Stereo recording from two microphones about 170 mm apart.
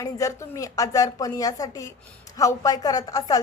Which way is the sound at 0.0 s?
20° left (ahead or behind).